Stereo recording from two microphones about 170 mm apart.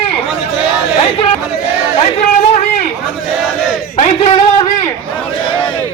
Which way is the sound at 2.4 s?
40° left (ahead or behind).